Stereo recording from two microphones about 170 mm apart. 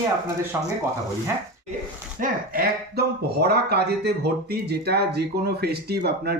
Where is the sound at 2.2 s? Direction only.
60° right (ahead or behind).